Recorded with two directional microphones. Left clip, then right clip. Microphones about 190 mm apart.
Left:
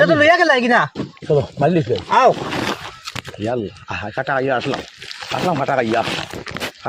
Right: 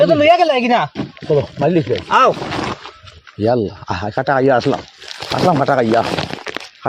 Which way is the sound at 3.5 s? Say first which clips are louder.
Right 5 dB; 50° right (ahead or behind).